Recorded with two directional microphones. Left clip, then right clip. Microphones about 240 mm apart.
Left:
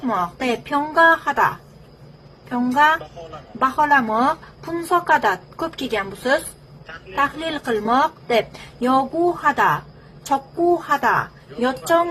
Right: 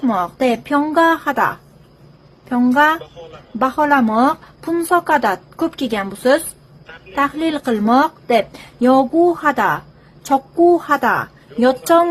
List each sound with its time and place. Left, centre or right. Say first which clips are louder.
0.0 s speech: right 5 dB; right